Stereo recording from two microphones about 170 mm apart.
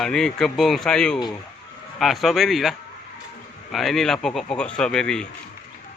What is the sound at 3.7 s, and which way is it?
Speech, centre (ahead or behind).